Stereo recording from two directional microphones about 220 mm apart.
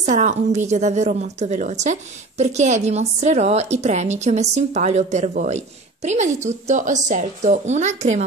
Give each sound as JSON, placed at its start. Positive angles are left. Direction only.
{"t": 0.0, "sound": "a woman's voice", "side_deg": -35}